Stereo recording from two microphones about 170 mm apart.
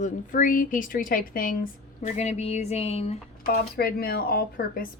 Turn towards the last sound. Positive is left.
turn(degrees=65)  # may be behind; listen again after turning